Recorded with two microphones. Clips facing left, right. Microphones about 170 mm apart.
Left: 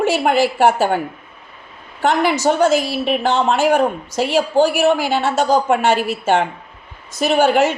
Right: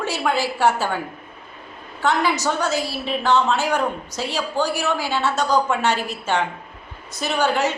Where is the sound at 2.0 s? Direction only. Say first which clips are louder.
Left 4 dB; 55° left (ahead or behind).